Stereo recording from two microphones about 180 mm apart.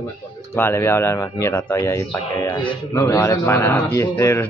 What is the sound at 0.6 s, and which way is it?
Speech, 10° left (ahead or behind).